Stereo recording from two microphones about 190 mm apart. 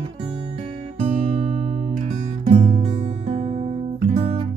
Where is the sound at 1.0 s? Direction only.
35° right (ahead or behind).